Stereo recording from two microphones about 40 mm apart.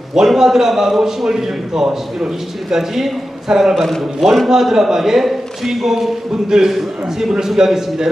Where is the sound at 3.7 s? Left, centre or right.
Centre.